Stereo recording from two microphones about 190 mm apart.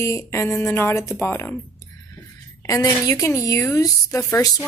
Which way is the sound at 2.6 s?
20° left (ahead or behind).